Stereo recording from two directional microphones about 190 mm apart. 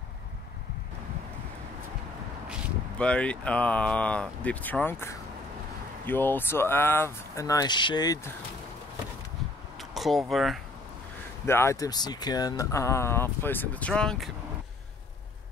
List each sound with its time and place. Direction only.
3.0 s speech: 5° left (ahead or behind)
9.8 s speech: centre (ahead or behind)
11.4 s speech: 15° left (ahead or behind)